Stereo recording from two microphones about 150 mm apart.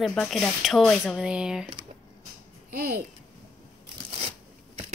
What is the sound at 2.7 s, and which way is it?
Speech, 90° right.